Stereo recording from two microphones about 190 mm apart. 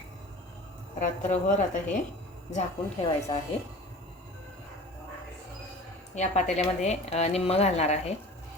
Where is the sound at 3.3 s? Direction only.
30° left (ahead or behind).